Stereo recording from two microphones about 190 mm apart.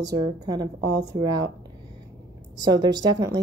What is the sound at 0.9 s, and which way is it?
Speech, 65° right (ahead or behind).